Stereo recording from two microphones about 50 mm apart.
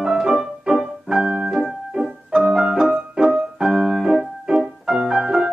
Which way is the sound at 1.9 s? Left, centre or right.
Centre.